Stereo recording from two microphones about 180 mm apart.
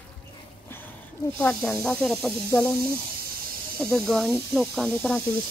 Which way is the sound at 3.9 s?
Centre (ahead or behind).